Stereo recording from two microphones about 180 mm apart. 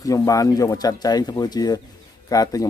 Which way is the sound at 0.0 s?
20° left (ahead or behind).